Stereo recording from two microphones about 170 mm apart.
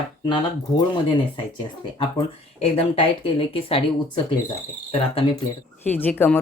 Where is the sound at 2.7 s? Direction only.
35° left (ahead or behind).